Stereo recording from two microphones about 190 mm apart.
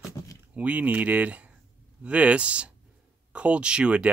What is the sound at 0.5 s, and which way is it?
Speech, 5° right (ahead or behind).